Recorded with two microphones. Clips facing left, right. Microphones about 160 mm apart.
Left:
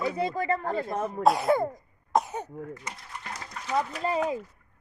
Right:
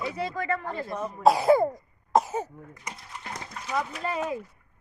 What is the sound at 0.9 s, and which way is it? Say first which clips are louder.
Speech: left 3 dB; 50° left (ahead or behind).